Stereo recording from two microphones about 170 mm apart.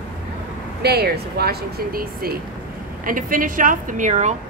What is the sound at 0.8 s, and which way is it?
Speech, 70° right (ahead or behind).